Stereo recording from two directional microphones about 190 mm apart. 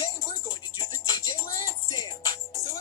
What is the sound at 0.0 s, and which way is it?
Music, 25° left (ahead or behind).